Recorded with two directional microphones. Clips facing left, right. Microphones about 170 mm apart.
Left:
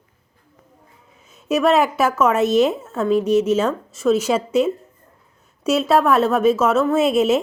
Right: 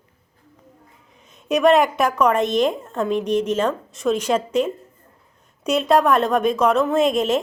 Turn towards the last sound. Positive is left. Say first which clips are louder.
# left 2 dB
turn(degrees=10)  # may be behind; listen again after turning